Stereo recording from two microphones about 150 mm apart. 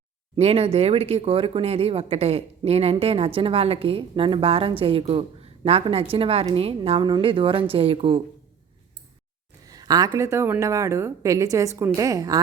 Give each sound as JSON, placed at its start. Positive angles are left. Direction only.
{"t": 0.3, "sound": "speech", "side_deg": -40}
{"t": 9.6, "sound": "a sound", "side_deg": -25}
{"t": 10.2, "sound": "a woman's voice", "side_deg": -20}